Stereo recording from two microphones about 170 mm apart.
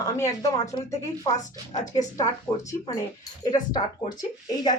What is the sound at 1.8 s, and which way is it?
Speech, 45° left (ahead or behind).